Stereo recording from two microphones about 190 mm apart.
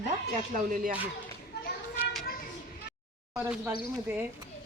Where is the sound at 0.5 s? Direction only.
45° right (ahead or behind).